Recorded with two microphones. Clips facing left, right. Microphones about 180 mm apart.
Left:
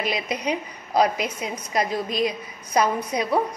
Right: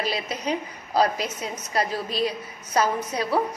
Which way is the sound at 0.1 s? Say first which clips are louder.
Left 1 dB; 15° left (ahead or behind).